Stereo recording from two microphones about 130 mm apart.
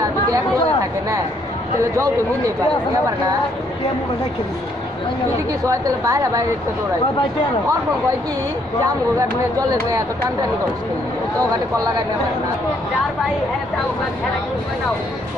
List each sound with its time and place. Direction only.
5.7 s a woman's voice: 25° right (ahead or behind)